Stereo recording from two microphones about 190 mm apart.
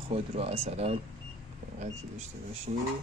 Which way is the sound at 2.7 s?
40° right (ahead or behind).